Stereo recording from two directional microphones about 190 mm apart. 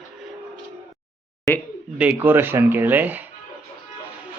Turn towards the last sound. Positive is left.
turn(degrees=-10)  # may be behind; listen again after turning